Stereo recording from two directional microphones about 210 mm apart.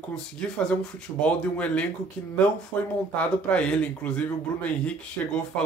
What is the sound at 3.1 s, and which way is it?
Speech, 5° left (ahead or behind).